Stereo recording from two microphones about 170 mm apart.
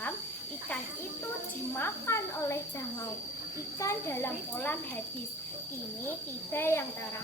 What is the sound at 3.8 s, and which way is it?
Speech, 15° left (ahead or behind).